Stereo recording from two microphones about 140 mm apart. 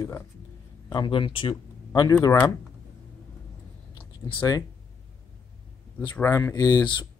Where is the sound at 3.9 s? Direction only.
40° left (ahead or behind).